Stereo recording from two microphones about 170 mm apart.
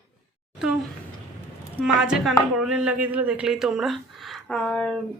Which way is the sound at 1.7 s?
5° right (ahead or behind).